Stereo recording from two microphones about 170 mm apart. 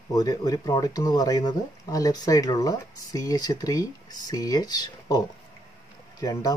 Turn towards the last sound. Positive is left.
turn(degrees=20)  # may be behind; listen again after turning